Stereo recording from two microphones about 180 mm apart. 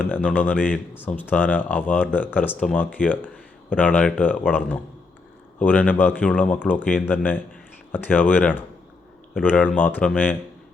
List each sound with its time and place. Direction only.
0.1 s speech: 10° left (ahead or behind)
5.5 s speech: 5° left (ahead or behind)